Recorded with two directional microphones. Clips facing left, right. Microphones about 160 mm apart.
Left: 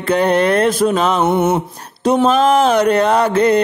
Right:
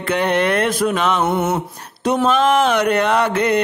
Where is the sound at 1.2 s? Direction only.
20° left (ahead or behind).